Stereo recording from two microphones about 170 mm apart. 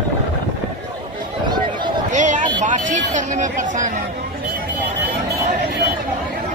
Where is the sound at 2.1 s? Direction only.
45° right (ahead or behind).